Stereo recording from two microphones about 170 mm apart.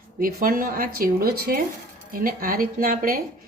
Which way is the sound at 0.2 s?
55° right (ahead or behind).